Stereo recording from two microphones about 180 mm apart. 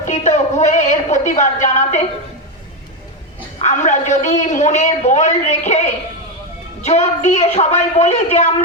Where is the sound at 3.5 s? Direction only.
40° left (ahead or behind).